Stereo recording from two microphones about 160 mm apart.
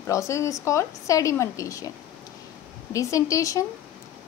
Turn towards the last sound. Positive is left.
turn(degrees=20)  # may be behind; listen again after turning